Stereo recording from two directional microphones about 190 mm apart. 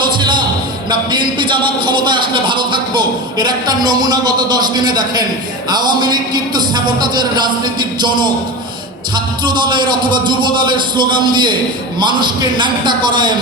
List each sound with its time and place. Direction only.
0.2 s a sound: 25° right (ahead or behind)
0.9 s a man's voice: 25° right (ahead or behind)
9.4 s a man's voice: 25° right (ahead or behind)